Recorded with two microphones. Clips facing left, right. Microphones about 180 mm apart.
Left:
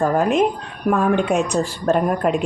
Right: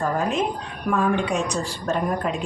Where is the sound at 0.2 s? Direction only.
60° left (ahead or behind).